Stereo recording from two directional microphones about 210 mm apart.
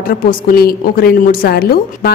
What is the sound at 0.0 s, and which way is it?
A woman's voice, 45° left (ahead or behind).